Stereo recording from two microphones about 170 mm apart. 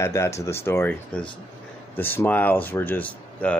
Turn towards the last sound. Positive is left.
turn(degrees=10)  # may be behind; listen again after turning